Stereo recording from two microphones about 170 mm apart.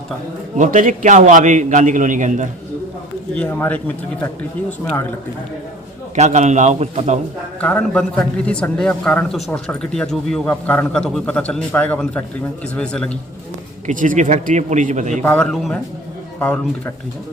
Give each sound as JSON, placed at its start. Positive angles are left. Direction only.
{"t": 0.5, "sound": "a man's voice", "side_deg": -50}
{"t": 3.3, "sound": "a man's voice", "side_deg": 10}
{"t": 6.1, "sound": "a man's voice", "side_deg": -40}
{"t": 7.6, "sound": "a man's voice", "side_deg": 5}
{"t": 13.8, "sound": "a man's voice", "side_deg": -50}
{"t": 15.2, "sound": "a man's voice", "side_deg": 10}